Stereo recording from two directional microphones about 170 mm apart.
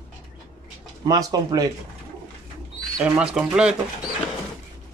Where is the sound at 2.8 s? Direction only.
5° right (ahead or behind).